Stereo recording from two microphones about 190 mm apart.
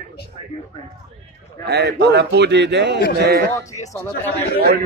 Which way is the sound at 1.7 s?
60° right (ahead or behind).